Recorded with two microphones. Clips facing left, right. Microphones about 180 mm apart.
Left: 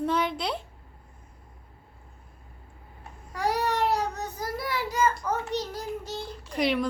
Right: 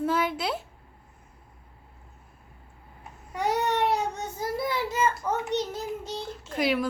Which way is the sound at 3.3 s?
20° right (ahead or behind).